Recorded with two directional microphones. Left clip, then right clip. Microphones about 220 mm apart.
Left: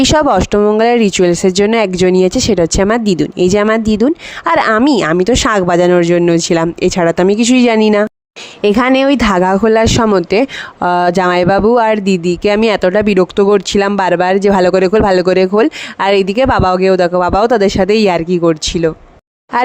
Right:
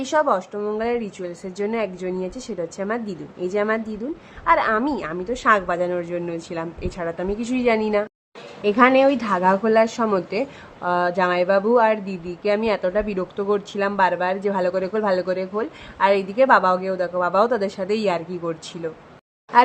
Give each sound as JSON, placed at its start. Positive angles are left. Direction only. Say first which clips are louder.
{"t": 0.0, "sound": "speech", "louder": "left 10 dB", "side_deg": 45}